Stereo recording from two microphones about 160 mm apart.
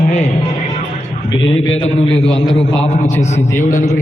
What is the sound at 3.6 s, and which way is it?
Speech, 50° left (ahead or behind).